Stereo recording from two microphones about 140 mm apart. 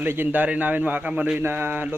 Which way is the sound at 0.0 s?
15° right (ahead or behind).